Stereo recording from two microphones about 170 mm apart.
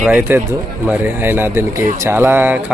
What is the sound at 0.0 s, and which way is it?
Speech, 10° right (ahead or behind).